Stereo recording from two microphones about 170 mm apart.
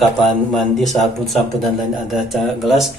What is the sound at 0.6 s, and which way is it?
Speech, centre (ahead or behind).